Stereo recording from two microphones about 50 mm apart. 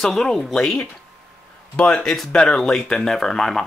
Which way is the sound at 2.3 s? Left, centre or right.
Left.